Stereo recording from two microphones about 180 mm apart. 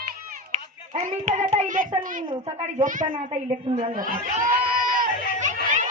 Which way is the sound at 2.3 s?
35° right (ahead or behind).